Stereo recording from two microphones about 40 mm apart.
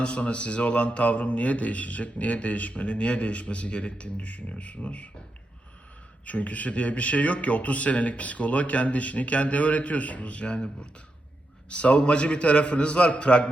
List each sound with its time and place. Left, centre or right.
0.0 s speech: left
6.2 s a man's voice: left